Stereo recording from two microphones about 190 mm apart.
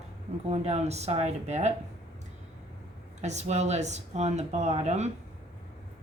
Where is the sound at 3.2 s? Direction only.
35° right (ahead or behind).